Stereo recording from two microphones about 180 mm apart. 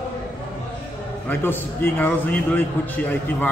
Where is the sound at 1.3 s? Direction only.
10° left (ahead or behind).